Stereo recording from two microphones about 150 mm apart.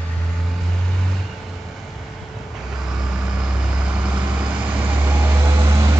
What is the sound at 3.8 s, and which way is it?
Vehicle, 5° right (ahead or behind).